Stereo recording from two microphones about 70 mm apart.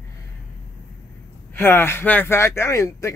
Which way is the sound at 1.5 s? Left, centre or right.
Left.